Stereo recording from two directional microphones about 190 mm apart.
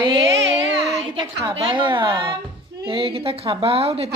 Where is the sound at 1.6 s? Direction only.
25° right (ahead or behind).